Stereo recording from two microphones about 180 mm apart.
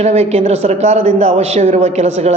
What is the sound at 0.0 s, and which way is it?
A woman's voice, 35° right (ahead or behind).